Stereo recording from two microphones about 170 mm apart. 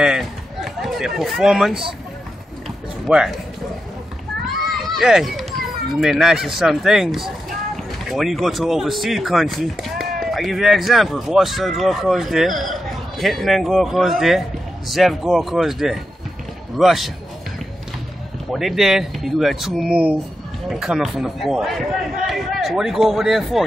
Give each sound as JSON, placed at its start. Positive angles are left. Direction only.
{"t": 0.0, "sound": "run", "side_deg": 0}
{"t": 3.1, "sound": "speech", "side_deg": -5}
{"t": 4.8, "sound": "speech", "side_deg": 0}
{"t": 18.5, "sound": "speech", "side_deg": 0}